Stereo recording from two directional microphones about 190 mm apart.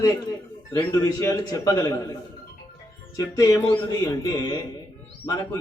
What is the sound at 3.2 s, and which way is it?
Speech, 20° left (ahead or behind).